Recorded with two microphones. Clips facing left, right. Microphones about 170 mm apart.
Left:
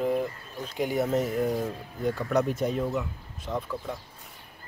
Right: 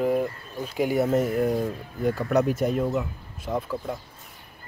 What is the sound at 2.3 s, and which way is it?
Speech, 5° right (ahead or behind).